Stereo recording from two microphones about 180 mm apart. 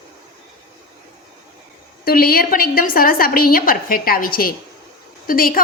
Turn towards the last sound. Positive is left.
turn(degrees=50)  # may be behind; listen again after turning